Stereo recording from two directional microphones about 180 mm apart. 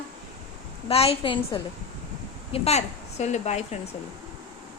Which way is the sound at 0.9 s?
35° left (ahead or behind).